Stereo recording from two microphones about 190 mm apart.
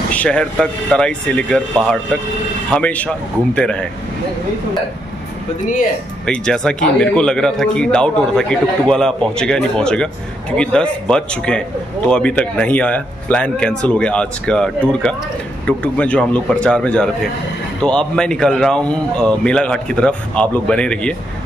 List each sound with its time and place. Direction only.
0.1 s speech: 5° left (ahead or behind)
6.2 s speech: 5° left (ahead or behind)